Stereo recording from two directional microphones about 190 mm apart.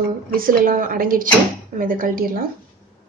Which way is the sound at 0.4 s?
50° right (ahead or behind).